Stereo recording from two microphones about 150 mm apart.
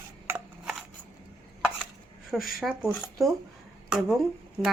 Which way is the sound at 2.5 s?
Centre (ahead or behind).